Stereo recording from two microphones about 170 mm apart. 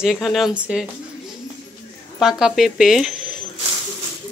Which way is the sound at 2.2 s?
Centre (ahead or behind).